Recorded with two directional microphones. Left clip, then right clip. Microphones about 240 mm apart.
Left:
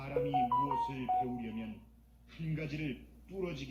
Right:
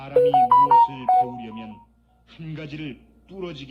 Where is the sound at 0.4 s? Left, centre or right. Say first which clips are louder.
Right 18 dB; right.